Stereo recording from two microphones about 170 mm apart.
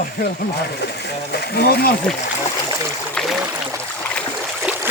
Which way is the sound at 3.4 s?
10° right (ahead or behind).